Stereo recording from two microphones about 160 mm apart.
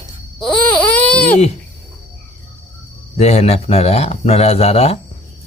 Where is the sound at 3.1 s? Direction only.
40° left (ahead or behind).